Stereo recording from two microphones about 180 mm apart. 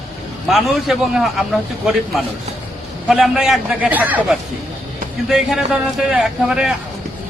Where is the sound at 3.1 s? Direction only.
5° right (ahead or behind).